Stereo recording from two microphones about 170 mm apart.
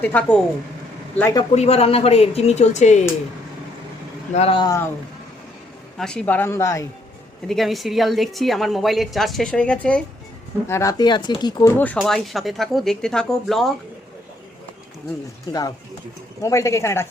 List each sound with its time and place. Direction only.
0.0 s a man's voice: 10° left (ahead or behind)
1.5 s a woman's voice: 35° left (ahead or behind)
4.4 s speech: 30° left (ahead or behind)
6.0 s speech: 5° left (ahead or behind)
7.4 s a woman's voice: centre (ahead or behind)
10.7 s speech: 15° left (ahead or behind)
11.7 s a woman's voice: 10° left (ahead or behind)
15.5 s speech: 25° left (ahead or behind)